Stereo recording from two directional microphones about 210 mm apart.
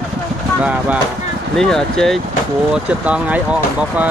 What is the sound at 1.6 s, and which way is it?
Speech, centre (ahead or behind).